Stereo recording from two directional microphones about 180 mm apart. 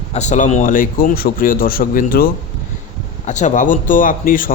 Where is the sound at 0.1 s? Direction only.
40° left (ahead or behind).